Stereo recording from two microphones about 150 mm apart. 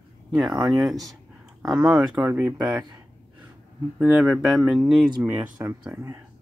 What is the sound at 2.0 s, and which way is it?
Speech, 25° right (ahead or behind).